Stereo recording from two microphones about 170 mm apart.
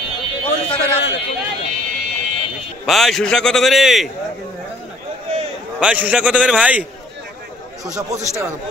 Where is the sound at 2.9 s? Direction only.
Centre (ahead or behind).